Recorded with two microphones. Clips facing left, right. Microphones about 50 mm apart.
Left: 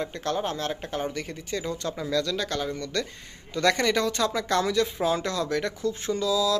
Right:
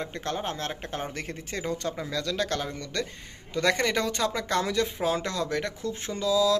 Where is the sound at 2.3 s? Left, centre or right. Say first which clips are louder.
Left 1 dB; right.